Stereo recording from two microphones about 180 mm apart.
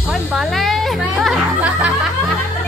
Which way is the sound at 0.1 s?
Centre (ahead or behind).